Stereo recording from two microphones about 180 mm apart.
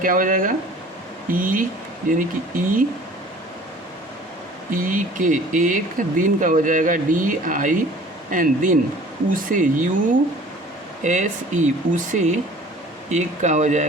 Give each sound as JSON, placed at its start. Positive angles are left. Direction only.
{"t": 0.0, "sound": "speech", "side_deg": -50}
{"t": 4.7, "sound": "speech", "side_deg": -50}